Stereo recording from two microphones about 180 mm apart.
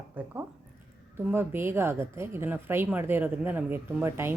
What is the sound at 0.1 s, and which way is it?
A woman's voice, 10° right (ahead or behind).